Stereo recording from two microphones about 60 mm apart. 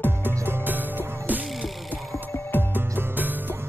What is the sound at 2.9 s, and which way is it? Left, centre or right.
Music, right.